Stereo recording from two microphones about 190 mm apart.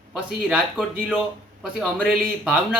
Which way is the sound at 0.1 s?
5° right (ahead or behind).